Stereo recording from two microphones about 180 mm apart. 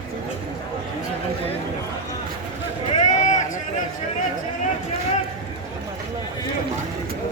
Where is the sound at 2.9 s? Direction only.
45° left (ahead or behind).